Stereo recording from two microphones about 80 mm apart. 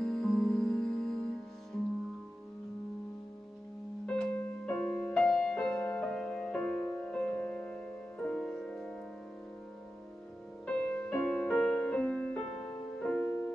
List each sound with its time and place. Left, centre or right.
0.0 s music: centre
4.0 s music: centre
10.6 s music: centre